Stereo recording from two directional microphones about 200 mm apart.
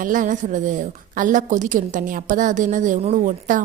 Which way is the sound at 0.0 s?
40° right (ahead or behind).